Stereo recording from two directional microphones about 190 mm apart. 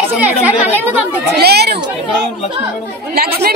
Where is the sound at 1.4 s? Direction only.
60° right (ahead or behind).